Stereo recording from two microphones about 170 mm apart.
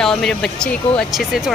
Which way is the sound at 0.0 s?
5° left (ahead or behind).